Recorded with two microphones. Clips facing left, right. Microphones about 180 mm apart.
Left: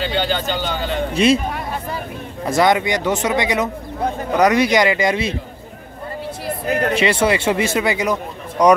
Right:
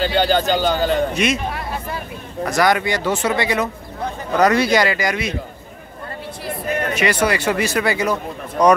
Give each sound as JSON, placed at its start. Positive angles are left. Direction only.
{"t": 0.0, "sound": "speech", "side_deg": -40}
{"t": 1.1, "sound": "speech", "side_deg": 30}
{"t": 2.4, "sound": "speech", "side_deg": 25}
{"t": 6.9, "sound": "speech", "side_deg": 25}